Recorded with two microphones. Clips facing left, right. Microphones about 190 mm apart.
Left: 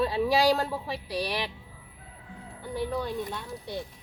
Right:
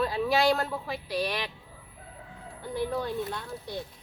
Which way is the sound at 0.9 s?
35° left (ahead or behind).